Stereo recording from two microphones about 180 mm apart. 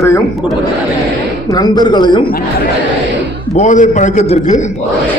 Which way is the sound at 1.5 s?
20° left (ahead or behind).